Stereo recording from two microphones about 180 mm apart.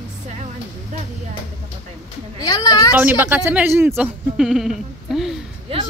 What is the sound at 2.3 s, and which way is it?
Speech, 20° left (ahead or behind).